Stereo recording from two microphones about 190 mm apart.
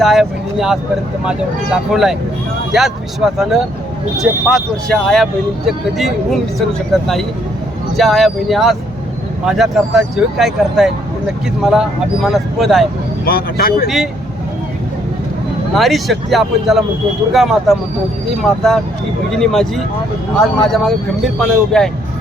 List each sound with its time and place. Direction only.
0.0 s speech: centre (ahead or behind)
13.2 s speech: 50° left (ahead or behind)
13.8 s speech: centre (ahead or behind)
15.7 s speech: centre (ahead or behind)